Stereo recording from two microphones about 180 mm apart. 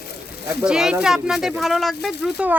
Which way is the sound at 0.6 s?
5° right (ahead or behind).